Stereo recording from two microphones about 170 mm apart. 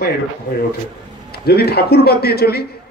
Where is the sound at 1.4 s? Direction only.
70° left (ahead or behind).